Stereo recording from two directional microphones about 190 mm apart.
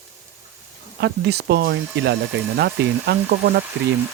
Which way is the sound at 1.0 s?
65° right (ahead or behind).